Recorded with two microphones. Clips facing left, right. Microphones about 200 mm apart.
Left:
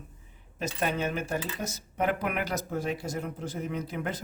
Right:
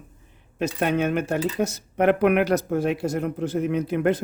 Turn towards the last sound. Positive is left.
turn(degrees=-65)  # may be behind; listen again after turning